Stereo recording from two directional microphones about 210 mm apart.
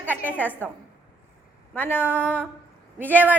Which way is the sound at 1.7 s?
10° left (ahead or behind).